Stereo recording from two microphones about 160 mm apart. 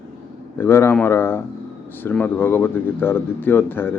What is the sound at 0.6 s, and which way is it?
Speech, 15° left (ahead or behind).